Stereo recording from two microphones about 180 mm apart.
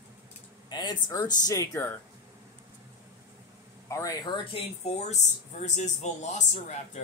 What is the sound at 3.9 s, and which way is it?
Speech, 20° left (ahead or behind).